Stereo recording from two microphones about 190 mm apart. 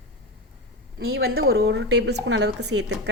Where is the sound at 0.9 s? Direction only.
55° right (ahead or behind).